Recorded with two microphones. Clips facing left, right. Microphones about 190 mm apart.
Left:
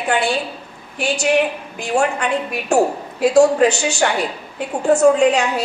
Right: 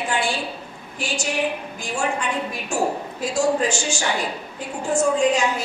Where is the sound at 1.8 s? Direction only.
65° left (ahead or behind).